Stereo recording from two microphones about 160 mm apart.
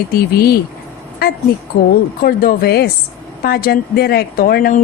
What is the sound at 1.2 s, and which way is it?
A woman's voice, 75° left (ahead or behind).